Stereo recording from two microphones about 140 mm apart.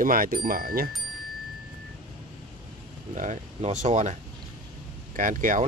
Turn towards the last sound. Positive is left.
turn(degrees=-75)  # may be behind; listen again after turning